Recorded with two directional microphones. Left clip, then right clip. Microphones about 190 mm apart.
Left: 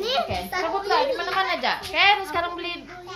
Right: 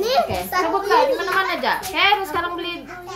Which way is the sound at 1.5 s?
35° left (ahead or behind).